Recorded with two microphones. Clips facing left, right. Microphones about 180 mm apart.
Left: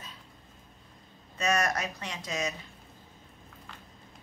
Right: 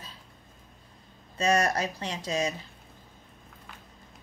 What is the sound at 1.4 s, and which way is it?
Speech, 30° right (ahead or behind).